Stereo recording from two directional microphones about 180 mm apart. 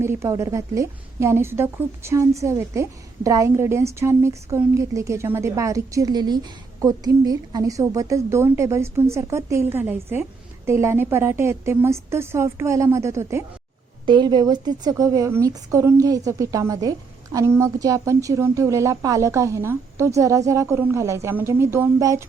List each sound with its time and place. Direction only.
0.0 s a woman's voice: 15° right (ahead or behind)